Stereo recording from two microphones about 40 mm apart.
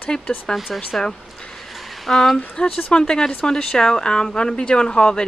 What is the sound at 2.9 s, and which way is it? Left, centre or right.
Speech, left.